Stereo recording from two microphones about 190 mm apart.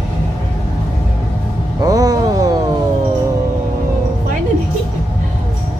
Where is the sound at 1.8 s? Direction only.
20° right (ahead or behind).